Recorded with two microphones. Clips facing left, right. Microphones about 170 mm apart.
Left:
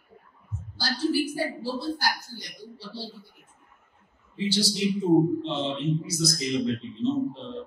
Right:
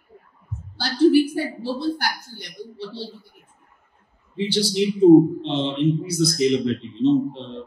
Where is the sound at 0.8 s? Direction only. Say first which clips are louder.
Right 10 dB; 60° right (ahead or behind).